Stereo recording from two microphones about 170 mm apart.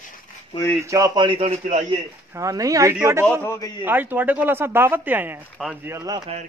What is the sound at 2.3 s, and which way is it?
Speech, 20° right (ahead or behind).